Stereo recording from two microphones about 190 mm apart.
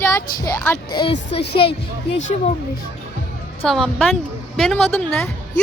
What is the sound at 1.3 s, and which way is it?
Speech, 30° left (ahead or behind).